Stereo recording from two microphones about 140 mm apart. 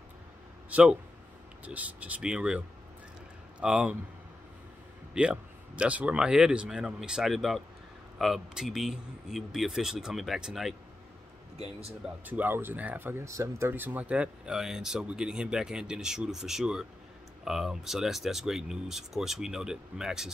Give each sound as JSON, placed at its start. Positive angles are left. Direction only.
{"t": 0.7, "sound": "speech", "side_deg": -10}
{"t": 5.1, "sound": "speech", "side_deg": -5}
{"t": 11.5, "sound": "speech", "side_deg": -45}
{"t": 12.3, "sound": "speech", "side_deg": -15}